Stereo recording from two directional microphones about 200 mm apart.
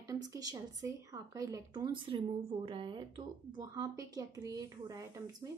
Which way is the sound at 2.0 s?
30° right (ahead or behind).